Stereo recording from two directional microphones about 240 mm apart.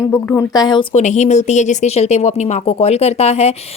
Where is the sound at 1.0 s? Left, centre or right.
Left.